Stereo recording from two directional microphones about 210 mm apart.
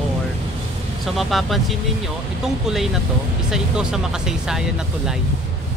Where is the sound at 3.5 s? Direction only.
Centre (ahead or behind).